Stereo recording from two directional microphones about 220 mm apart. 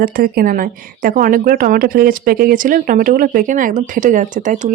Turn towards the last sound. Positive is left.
turn(degrees=-35)  # may be behind; listen again after turning